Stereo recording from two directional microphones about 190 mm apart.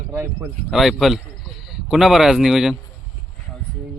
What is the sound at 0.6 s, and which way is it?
Speech, centre (ahead or behind).